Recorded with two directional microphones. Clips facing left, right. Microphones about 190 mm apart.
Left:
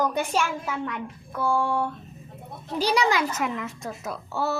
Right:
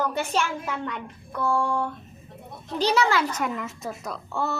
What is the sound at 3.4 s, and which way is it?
A woman's voice, centre (ahead or behind).